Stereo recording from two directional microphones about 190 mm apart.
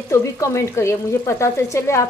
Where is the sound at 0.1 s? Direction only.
15° left (ahead or behind).